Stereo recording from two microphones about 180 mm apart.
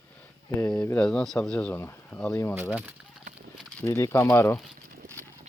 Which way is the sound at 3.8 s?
20° left (ahead or behind).